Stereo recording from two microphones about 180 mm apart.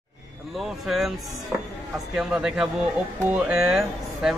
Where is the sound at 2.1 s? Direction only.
5° right (ahead or behind).